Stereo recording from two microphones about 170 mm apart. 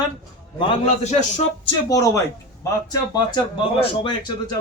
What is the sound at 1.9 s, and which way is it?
A man's voice, 20° left (ahead or behind).